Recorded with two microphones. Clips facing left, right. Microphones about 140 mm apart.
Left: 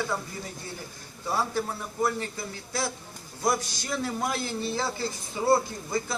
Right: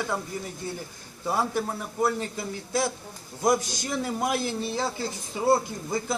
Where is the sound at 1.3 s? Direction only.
15° right (ahead or behind).